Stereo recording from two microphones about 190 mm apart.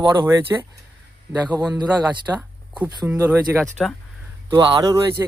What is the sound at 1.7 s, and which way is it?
Speech, 20° right (ahead or behind).